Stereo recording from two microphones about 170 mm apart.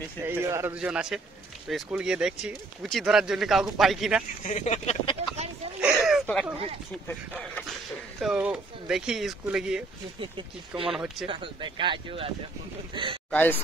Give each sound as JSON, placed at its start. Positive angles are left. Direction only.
{"t": 0.2, "sound": "a man's voice", "side_deg": -10}
{"t": 4.4, "sound": "speech", "side_deg": 45}
{"t": 5.8, "sound": "a sound", "side_deg": -5}
{"t": 7.1, "sound": "speech", "side_deg": 10}
{"t": 8.2, "sound": "speech", "side_deg": -5}
{"t": 10.9, "sound": "speech", "side_deg": 0}
{"t": 11.2, "sound": "speech", "side_deg": -30}
{"t": 13.3, "sound": "speech", "side_deg": 10}